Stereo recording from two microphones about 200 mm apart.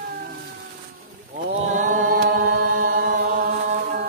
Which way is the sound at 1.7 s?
40° right (ahead or behind).